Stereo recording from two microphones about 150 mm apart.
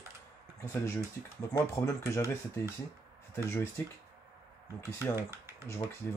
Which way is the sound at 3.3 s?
20° left (ahead or behind).